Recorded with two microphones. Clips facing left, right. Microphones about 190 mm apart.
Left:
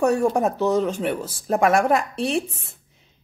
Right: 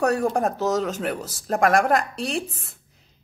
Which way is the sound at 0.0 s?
60° right (ahead or behind).